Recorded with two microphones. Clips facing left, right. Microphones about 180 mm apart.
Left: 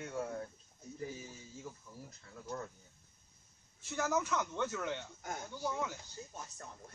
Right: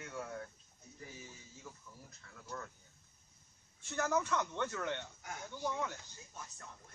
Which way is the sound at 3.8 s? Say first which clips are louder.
Even; 5° left (ahead or behind).